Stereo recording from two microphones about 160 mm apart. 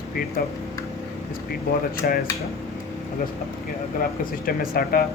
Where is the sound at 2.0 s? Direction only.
70° left (ahead or behind).